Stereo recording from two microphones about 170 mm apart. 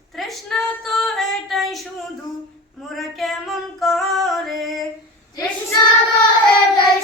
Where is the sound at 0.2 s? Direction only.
Centre (ahead or behind).